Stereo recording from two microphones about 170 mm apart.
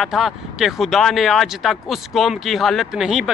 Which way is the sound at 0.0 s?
Centre (ahead or behind).